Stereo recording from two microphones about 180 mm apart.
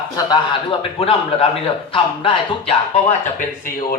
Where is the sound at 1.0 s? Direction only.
35° left (ahead or behind).